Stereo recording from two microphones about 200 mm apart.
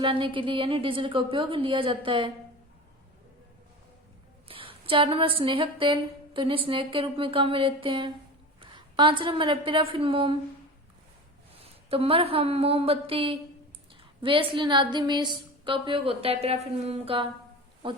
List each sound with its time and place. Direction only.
0.0 s a woman's voice: 25° right (ahead or behind)
4.4 s a woman's voice: 25° right (ahead or behind)
11.9 s a woman's voice: 30° right (ahead or behind)